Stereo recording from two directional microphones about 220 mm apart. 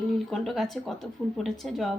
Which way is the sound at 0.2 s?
Centre (ahead or behind).